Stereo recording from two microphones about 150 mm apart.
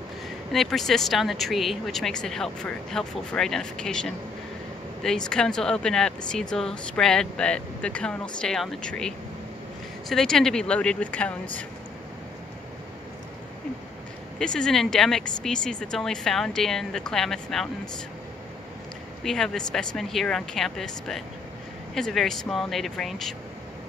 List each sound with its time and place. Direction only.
0.5 s speech: centre (ahead or behind)
14.4 s speech: 5° left (ahead or behind)
19.2 s speech: 5° left (ahead or behind)